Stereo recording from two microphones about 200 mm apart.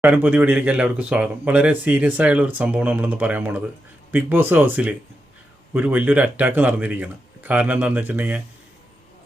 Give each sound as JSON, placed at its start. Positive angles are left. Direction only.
{"t": 0.0, "sound": "speech", "side_deg": -10}